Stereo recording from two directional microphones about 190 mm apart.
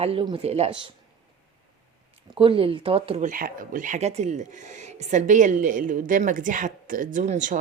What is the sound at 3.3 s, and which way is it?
Speech, 45° right (ahead or behind).